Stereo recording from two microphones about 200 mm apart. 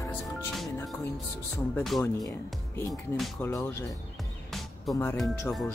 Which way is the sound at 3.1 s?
Centre (ahead or behind).